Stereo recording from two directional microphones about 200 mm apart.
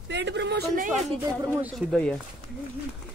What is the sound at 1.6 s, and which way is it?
Speech, 5° left (ahead or behind).